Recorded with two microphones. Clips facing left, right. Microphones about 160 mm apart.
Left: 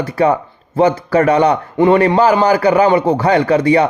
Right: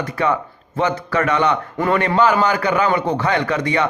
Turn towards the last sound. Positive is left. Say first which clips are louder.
# left 8 dB
turn(degrees=35)  # may be behind; listen again after turning